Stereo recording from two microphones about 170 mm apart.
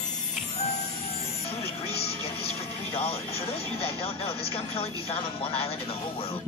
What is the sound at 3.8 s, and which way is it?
Speech, 35° left (ahead or behind).